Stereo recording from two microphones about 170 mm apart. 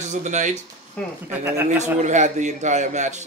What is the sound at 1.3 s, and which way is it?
Speech, 15° right (ahead or behind).